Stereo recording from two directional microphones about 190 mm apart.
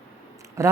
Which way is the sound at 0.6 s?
15° right (ahead or behind).